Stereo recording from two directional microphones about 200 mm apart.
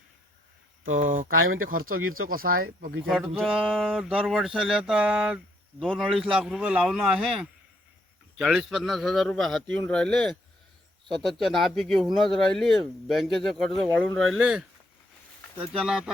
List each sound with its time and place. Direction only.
0.9 s speech: 40° right (ahead or behind)
1.3 s speech: 90° right
2.3 s speech: 45° right (ahead or behind)
3.1 s speech: centre (ahead or behind)